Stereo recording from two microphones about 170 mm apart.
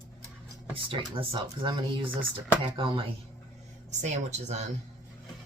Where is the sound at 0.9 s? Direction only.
30° right (ahead or behind).